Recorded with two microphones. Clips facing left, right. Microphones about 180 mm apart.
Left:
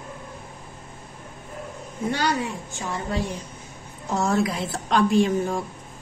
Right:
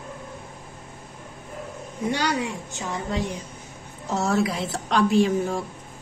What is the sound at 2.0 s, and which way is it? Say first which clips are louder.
A woman's voice: even; 15° right (ahead or behind).